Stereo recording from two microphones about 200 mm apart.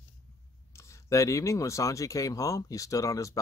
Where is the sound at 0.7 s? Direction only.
15° left (ahead or behind).